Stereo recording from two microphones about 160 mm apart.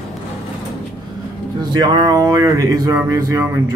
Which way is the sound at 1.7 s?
25° right (ahead or behind).